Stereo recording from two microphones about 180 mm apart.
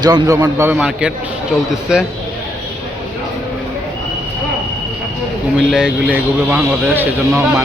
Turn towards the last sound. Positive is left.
turn(degrees=-10)  # may be behind; listen again after turning